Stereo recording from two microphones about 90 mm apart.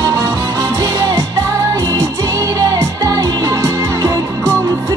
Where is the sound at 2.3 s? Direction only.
40° right (ahead or behind).